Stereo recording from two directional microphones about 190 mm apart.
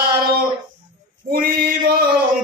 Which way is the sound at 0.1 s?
50° right (ahead or behind).